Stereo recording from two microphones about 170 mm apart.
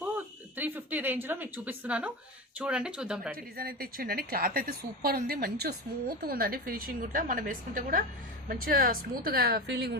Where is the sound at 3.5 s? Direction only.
60° right (ahead or behind).